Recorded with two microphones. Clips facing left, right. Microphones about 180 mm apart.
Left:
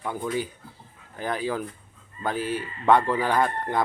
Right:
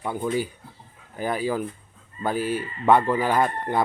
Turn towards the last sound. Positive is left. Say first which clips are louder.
# right 1 dB
turn(degrees=-5)  # may be behind; listen again after turning